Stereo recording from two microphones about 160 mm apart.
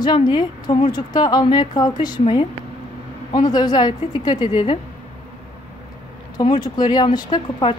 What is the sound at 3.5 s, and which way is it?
A woman's voice, 25° left (ahead or behind).